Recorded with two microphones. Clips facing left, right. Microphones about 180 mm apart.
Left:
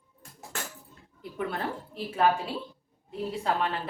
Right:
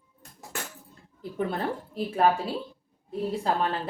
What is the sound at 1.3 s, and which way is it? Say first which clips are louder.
Speech: right 3 dB; 35° right (ahead or behind).